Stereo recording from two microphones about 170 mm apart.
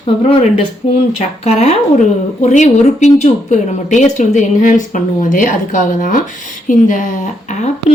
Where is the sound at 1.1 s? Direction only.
40° left (ahead or behind).